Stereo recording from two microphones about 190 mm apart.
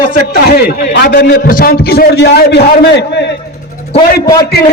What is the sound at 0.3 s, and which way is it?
A man's voice, 55° left (ahead or behind).